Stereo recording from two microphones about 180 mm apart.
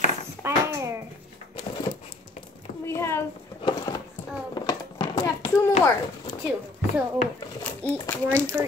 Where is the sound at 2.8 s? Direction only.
15° left (ahead or behind).